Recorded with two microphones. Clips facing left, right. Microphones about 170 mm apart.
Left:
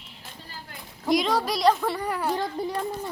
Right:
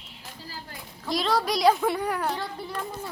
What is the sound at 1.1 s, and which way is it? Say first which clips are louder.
Speech: left 3 dB; 15° left (ahead or behind).